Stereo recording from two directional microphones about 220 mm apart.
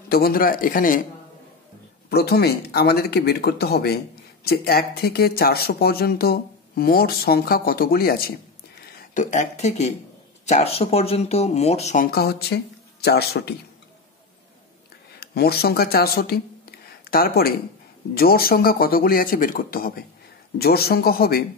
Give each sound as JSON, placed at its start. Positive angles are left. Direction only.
{"t": 0.1, "sound": "speech", "side_deg": 45}
{"t": 2.0, "sound": "speech", "side_deg": 45}
{"t": 15.1, "sound": "speech", "side_deg": 45}